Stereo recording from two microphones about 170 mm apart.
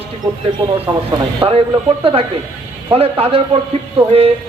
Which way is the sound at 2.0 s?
35° right (ahead or behind).